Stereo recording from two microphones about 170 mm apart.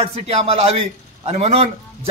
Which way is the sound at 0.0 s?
35° right (ahead or behind).